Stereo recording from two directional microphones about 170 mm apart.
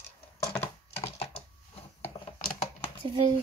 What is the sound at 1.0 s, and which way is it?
Typing, 35° left (ahead or behind).